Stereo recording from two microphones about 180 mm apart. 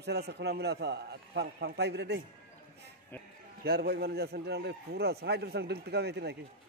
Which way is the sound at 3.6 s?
60° right (ahead or behind).